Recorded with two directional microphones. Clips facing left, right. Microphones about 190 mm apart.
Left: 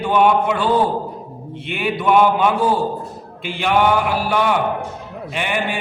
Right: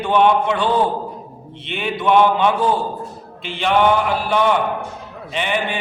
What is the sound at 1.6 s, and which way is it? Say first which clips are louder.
Mantra: left 1 dB; 10° left (ahead or behind).